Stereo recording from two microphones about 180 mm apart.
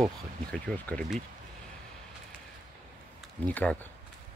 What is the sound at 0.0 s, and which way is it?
Speech, 5° left (ahead or behind).